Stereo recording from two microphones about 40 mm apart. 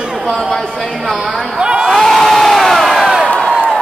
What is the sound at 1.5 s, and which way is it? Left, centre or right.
Speech, right.